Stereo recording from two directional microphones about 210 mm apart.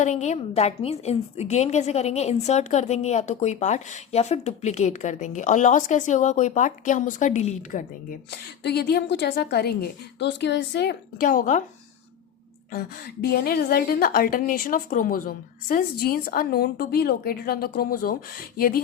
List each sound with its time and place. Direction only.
0.0 s a woman's voice: 35° left (ahead or behind)
8.3 s a woman's voice: 50° left (ahead or behind)
13.2 s a woman's voice: 45° left (ahead or behind)